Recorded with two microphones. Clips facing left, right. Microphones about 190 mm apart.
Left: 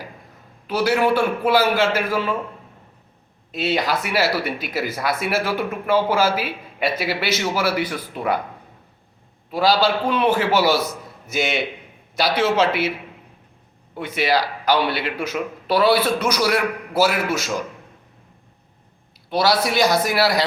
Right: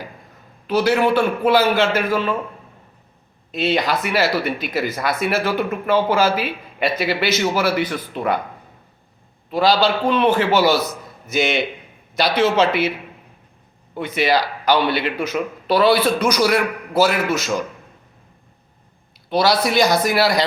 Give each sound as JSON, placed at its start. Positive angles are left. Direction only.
{"t": 0.7, "sound": "speech", "side_deg": 10}
{"t": 3.5, "sound": "speech", "side_deg": 5}
{"t": 9.5, "sound": "speech", "side_deg": 5}
{"t": 13.9, "sound": "speech", "side_deg": 5}
{"t": 19.3, "sound": "speech", "side_deg": 5}